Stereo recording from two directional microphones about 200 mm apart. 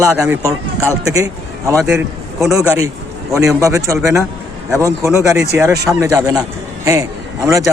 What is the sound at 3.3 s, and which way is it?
Speech, 15° right (ahead or behind).